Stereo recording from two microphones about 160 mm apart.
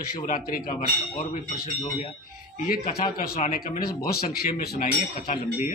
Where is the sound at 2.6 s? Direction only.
65° left (ahead or behind).